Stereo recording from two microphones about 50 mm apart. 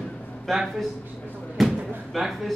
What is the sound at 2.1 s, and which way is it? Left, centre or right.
Speech, centre.